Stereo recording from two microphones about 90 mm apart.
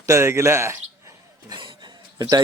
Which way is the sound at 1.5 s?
60° right (ahead or behind).